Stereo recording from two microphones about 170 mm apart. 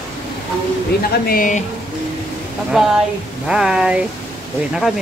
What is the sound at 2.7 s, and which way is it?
Speech, centre (ahead or behind).